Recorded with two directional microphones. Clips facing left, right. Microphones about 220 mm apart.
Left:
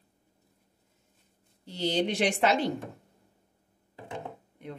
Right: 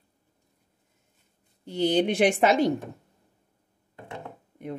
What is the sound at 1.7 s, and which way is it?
Speech, 50° right (ahead or behind).